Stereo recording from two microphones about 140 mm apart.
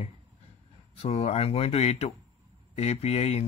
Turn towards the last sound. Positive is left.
turn(degrees=50)  # may be behind; listen again after turning